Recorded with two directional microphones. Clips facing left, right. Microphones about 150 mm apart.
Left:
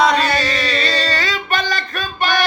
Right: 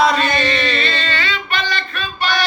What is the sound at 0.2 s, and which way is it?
Music, 40° left (ahead or behind).